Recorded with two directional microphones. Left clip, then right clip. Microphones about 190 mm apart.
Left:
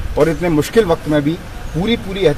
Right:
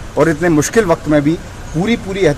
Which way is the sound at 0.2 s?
10° right (ahead or behind).